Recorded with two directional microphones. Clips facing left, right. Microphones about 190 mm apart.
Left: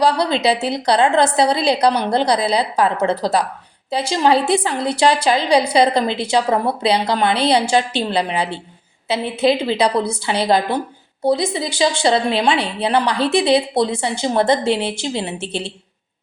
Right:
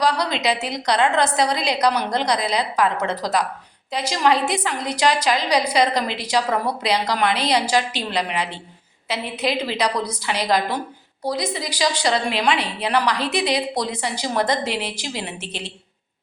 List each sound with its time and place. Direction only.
0.0 s a woman's voice: 30° left (ahead or behind)